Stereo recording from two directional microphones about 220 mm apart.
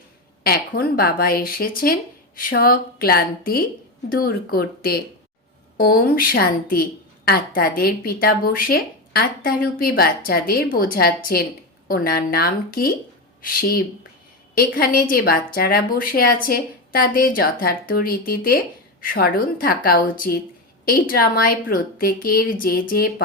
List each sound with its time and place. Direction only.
0.4 s a woman's voice: 45° left (ahead or behind)